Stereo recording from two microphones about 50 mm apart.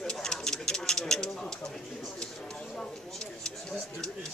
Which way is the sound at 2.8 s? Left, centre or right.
Centre.